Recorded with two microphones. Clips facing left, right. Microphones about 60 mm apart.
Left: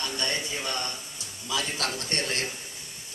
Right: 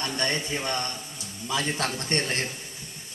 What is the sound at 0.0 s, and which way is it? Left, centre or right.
A man's voice, right.